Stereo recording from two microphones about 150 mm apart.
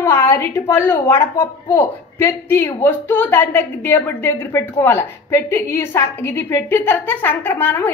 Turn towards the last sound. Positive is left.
turn(degrees=15)  # may be behind; listen again after turning